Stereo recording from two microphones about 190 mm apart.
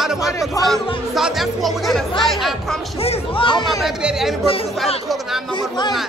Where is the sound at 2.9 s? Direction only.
30° left (ahead or behind).